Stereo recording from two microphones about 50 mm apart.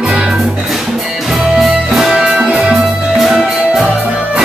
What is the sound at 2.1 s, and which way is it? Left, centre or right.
Music, right.